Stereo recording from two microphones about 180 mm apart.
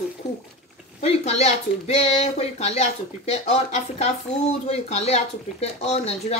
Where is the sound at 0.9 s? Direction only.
35° left (ahead or behind).